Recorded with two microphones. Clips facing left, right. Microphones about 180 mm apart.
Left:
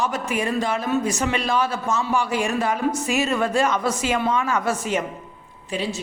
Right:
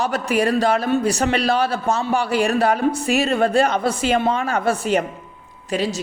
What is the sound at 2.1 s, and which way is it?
Speech, 65° right (ahead or behind).